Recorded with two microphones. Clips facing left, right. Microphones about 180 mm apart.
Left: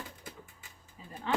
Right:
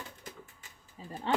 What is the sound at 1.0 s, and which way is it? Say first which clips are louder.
Speech: right 5 dB; 35° right (ahead or behind).